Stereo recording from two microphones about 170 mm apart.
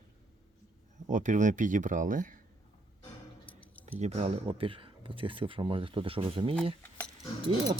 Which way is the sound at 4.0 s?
40° right (ahead or behind).